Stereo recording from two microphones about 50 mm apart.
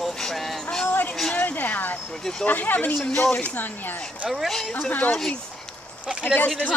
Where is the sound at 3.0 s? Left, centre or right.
Centre.